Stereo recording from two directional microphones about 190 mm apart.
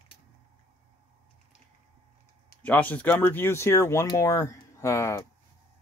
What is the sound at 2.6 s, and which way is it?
Speech, 10° left (ahead or behind).